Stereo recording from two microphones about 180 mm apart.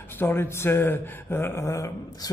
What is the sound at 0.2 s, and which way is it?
Speech, 10° left (ahead or behind).